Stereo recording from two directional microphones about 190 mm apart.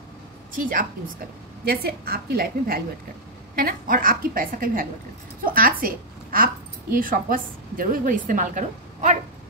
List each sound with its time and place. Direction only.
0.6 s a woman's voice: 45° right (ahead or behind)